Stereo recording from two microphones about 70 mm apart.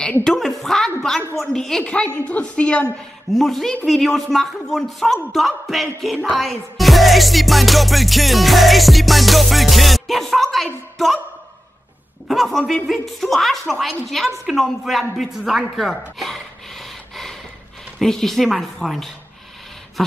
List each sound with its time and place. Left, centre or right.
0.2 s music: centre
1.9 s a woman's voice: centre
3.3 s music: centre
12.3 s music: centre
14.4 s speech: centre
17.9 s music: centre